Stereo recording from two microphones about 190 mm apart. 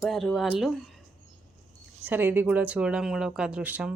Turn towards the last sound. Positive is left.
turn(degrees=-5)  # may be behind; listen again after turning